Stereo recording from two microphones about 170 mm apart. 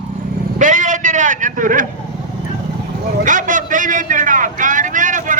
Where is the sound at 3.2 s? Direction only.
50° right (ahead or behind).